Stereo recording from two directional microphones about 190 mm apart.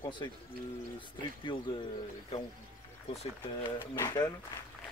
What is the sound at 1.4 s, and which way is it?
Speech, 25° left (ahead or behind).